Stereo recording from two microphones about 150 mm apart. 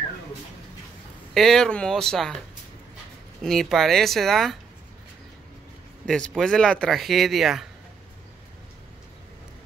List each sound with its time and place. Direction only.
1.3 s speech: centre (ahead or behind)
3.4 s speech: centre (ahead or behind)
6.0 s speech: 5° left (ahead or behind)